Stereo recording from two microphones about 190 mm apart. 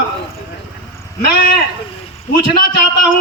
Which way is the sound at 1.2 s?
55° left (ahead or behind).